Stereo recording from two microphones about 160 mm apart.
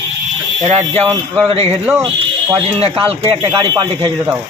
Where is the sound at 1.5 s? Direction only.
40° right (ahead or behind).